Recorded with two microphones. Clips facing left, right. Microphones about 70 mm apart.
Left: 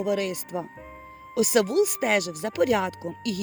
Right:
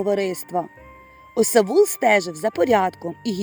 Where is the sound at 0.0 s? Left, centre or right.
Right.